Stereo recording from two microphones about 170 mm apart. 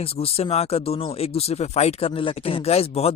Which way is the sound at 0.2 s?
35° left (ahead or behind).